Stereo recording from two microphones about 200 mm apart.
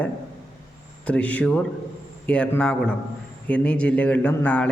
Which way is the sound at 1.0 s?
5° left (ahead or behind).